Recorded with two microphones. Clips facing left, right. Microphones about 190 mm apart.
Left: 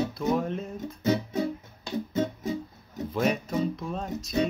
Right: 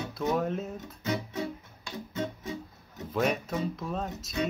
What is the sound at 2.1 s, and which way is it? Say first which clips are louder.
Music: left 5 dB; 40° left (ahead or behind).